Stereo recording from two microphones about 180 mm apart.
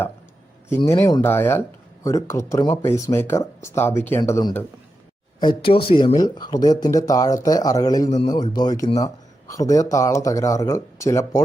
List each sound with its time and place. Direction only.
0.8 s speech: 20° left (ahead or behind)
5.4 s speech: 25° left (ahead or behind)